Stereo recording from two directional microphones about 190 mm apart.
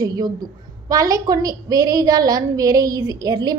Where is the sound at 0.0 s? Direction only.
20° right (ahead or behind).